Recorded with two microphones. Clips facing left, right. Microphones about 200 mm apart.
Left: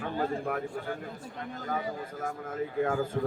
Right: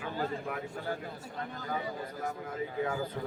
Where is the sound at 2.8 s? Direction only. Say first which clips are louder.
Left 5 dB; 50° left (ahead or behind).